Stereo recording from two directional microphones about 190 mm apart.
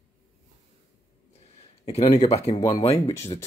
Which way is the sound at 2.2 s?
35° left (ahead or behind).